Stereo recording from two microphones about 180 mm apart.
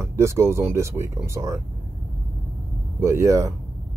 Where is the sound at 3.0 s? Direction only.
15° right (ahead or behind).